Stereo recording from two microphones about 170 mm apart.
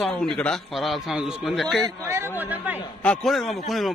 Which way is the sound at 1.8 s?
15° right (ahead or behind).